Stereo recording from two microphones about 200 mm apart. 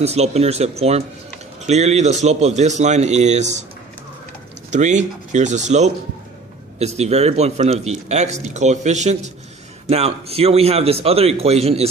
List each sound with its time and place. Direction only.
0.0 s speech: 30° right (ahead or behind)
4.7 s speech: 35° right (ahead or behind)